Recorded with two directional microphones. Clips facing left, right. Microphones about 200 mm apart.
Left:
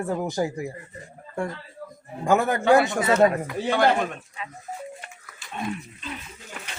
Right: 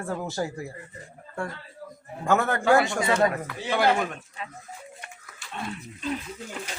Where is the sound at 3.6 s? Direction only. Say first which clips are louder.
Left 2 dB; 5° right (ahead or behind).